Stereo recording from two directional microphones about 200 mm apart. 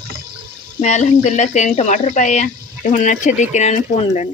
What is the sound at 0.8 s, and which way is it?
Speech, 35° left (ahead or behind).